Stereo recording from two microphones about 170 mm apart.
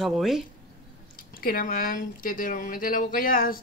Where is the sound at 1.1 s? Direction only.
55° left (ahead or behind).